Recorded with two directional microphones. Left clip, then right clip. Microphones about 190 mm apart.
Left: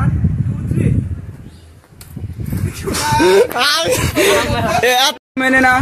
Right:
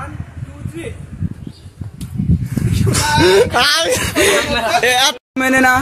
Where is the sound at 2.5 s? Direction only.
Centre (ahead or behind).